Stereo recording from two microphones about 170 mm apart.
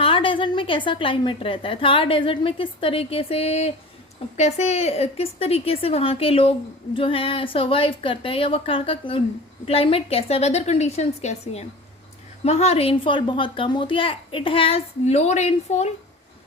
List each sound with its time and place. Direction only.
0.0 s a woman's voice: 30° left (ahead or behind)